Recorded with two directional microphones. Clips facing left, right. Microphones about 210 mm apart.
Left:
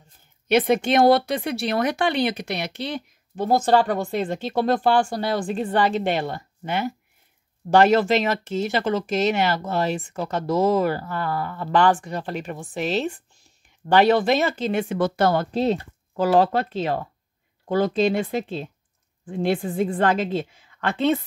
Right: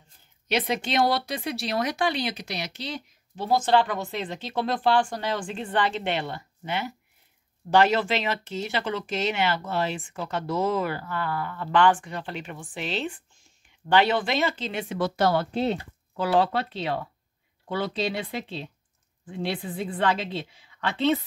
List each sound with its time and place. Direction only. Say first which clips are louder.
0.5 s speech: left 8 dB; 50° left (ahead or behind)
15.5 s speech: left 4 dB; 35° left (ahead or behind)